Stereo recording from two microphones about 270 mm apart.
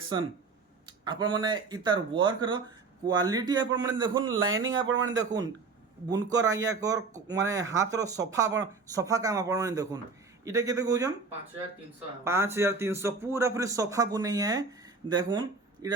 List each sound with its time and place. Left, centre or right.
0.9 s speech: centre
4.6 s speech: right
4.9 s speech: centre
12.2 s speech: centre